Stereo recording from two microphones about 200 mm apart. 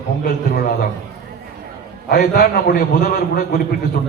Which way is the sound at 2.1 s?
50° left (ahead or behind).